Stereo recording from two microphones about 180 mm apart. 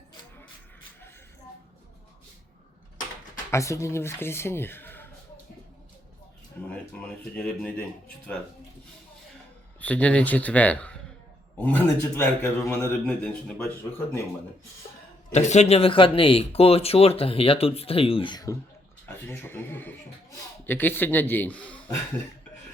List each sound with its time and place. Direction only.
3.5 s a man's voice: 15° left (ahead or behind)
6.7 s a man's voice: 5° left (ahead or behind)
9.8 s a man's voice: 10° left (ahead or behind)
15.3 s speech: 40° left (ahead or behind); by 18.5 s 25° left (ahead or behind)
19.0 s a man's voice: 10° left (ahead or behind)